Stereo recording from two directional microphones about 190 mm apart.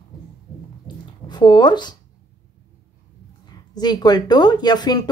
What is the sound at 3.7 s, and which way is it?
Speech, 20° left (ahead or behind).